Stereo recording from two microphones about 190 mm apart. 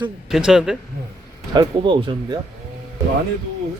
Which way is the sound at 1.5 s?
25° right (ahead or behind).